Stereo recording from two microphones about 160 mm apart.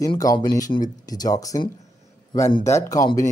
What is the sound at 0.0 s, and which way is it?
Speech, 25° left (ahead or behind).